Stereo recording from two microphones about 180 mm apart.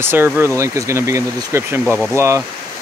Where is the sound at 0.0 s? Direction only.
10° right (ahead or behind).